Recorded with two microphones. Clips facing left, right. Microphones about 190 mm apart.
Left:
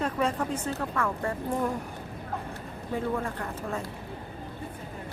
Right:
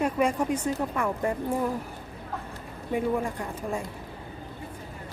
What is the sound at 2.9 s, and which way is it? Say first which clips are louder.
Speech: right 3 dB; 15° right (ahead or behind).